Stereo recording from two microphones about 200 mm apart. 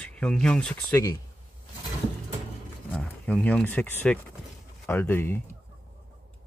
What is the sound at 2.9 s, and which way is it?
Speech, 5° left (ahead or behind).